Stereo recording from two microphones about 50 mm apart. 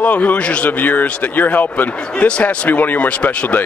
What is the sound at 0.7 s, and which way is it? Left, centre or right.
Speech, left.